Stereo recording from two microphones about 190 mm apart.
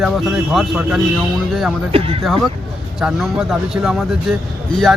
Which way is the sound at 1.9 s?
30° right (ahead or behind).